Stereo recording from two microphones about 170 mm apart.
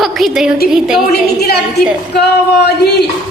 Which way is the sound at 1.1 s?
70° left (ahead or behind).